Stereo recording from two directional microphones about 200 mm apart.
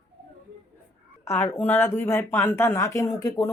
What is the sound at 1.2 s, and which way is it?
A woman's voice, 10° left (ahead or behind).